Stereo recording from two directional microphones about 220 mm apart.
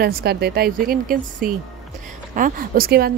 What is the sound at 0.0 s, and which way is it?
A woman's voice, 45° right (ahead or behind).